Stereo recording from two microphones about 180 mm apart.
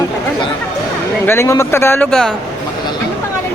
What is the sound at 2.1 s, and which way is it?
Speech, 5° left (ahead or behind).